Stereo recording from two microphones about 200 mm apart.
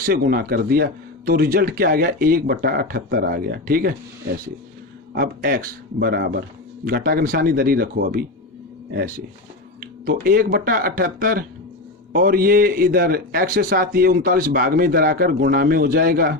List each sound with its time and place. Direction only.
0.0 s speech: 45° right (ahead or behind)
5.1 s speech: 45° right (ahead or behind)
10.1 s speech: 45° right (ahead or behind)